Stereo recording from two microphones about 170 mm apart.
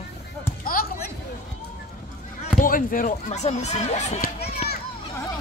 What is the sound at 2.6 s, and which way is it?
Speech, 55° left (ahead or behind).